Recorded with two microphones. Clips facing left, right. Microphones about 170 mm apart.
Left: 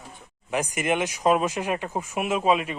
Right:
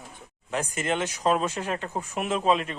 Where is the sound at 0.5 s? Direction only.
10° left (ahead or behind).